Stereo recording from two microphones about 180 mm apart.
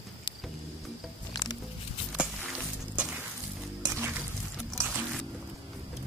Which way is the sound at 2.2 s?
Centre (ahead or behind).